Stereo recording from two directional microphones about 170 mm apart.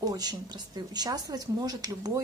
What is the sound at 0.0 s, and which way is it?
A woman's voice, 20° right (ahead or behind).